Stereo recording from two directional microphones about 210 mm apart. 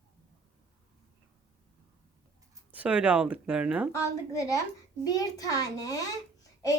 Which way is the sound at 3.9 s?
15° left (ahead or behind).